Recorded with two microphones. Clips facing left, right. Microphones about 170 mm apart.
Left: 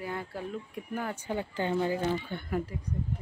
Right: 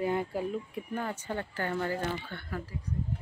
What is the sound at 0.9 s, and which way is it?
Speech, 5° left (ahead or behind).